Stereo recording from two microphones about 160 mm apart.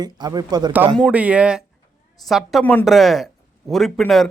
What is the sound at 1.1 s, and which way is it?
Speech, 10° right (ahead or behind).